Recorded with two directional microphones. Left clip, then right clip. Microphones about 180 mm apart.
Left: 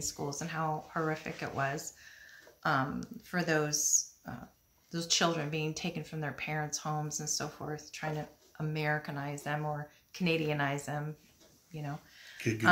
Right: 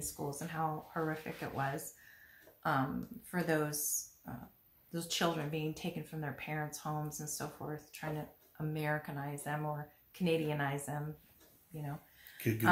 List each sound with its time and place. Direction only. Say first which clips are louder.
0.0 s speech: left 4 dB; 20° left (ahead or behind)
12.4 s speech: left 3 dB; 15° right (ahead or behind)